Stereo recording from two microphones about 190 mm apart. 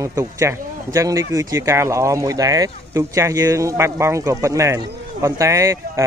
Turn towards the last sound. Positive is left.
turn(degrees=-15)  # may be behind; listen again after turning